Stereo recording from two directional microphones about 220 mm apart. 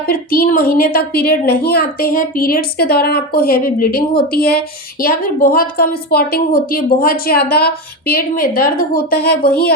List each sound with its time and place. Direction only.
0.1 s a woman's voice: 40° left (ahead or behind)